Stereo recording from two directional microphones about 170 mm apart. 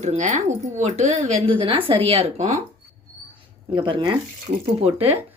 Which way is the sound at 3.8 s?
25° right (ahead or behind).